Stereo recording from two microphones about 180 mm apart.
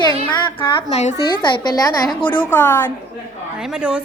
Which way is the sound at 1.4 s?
20° left (ahead or behind).